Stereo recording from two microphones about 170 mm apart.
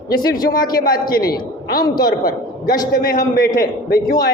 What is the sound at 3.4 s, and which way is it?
Speech, 55° left (ahead or behind).